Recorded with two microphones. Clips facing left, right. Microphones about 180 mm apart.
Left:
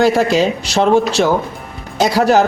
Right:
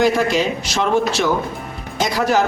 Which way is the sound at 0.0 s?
35° left (ahead or behind).